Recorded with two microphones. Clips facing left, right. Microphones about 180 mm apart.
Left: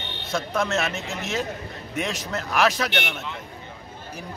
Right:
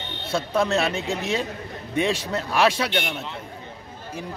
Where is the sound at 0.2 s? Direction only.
30° right (ahead or behind).